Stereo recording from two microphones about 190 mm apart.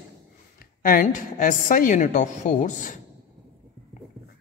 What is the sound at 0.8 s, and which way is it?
A woman's voice, 45° left (ahead or behind).